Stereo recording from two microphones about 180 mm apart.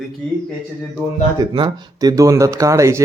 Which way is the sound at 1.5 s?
25° right (ahead or behind).